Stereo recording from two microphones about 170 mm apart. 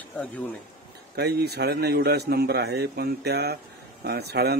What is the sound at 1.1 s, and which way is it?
Speech, 70° right (ahead or behind).